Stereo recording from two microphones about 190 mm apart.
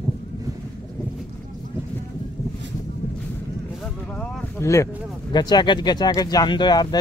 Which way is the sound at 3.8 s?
5° left (ahead or behind).